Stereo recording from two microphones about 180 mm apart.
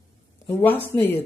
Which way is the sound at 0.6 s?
10° left (ahead or behind).